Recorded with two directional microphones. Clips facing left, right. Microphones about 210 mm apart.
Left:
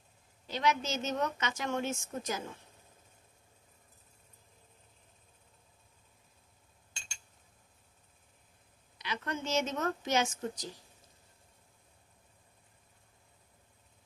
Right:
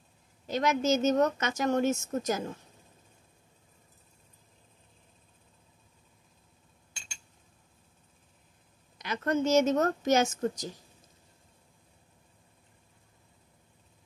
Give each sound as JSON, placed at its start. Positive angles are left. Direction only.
{"t": 0.5, "sound": "a woman's voice", "side_deg": -45}
{"t": 8.9, "sound": "a woman's voice", "side_deg": -45}